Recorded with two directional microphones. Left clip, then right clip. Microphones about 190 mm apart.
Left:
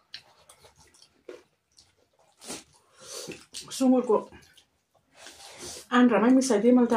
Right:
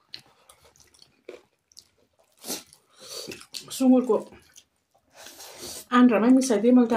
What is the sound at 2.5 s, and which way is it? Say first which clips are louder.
Dog: right 5 dB; 55° right (ahead or behind).